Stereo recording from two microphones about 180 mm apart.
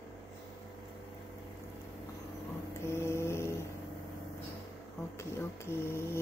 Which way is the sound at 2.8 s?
15° left (ahead or behind).